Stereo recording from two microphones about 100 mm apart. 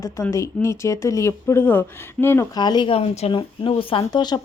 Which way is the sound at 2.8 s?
85° left.